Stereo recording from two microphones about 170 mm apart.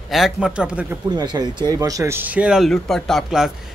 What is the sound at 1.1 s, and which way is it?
Speech, 25° right (ahead or behind).